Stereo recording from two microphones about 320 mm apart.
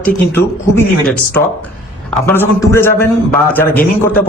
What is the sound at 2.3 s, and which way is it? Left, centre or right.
A man's voice, centre.